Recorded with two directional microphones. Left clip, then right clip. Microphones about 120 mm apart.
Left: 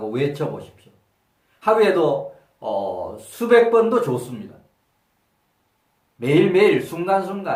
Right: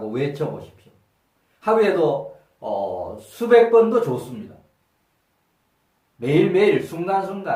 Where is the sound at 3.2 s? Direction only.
15° left (ahead or behind).